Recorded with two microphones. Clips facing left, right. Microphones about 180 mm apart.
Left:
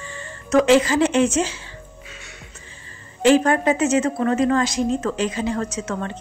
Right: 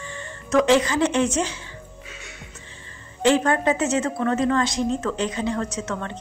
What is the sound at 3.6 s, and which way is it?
Speech, 20° left (ahead or behind).